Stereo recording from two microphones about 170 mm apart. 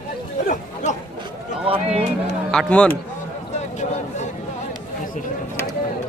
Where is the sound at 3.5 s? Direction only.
45° left (ahead or behind).